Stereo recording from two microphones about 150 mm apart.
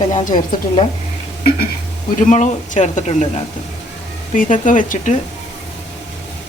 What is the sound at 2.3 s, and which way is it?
Speech, 55° left (ahead or behind).